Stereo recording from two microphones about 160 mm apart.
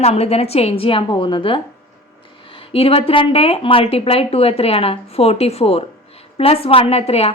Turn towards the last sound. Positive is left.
turn(degrees=40)  # may be behind; listen again after turning